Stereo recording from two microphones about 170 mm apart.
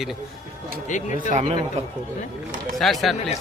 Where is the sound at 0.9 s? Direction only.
45° left (ahead or behind).